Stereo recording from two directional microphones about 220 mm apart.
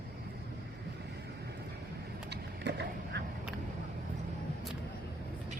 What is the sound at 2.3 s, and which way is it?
Skateboard, 50° right (ahead or behind).